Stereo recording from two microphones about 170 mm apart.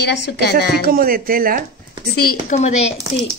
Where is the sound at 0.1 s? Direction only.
80° left.